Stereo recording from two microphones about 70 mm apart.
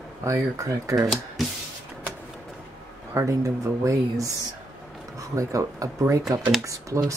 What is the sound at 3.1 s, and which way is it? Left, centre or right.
Speech, right.